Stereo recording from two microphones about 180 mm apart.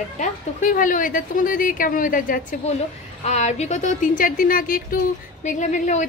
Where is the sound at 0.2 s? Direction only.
45° left (ahead or behind).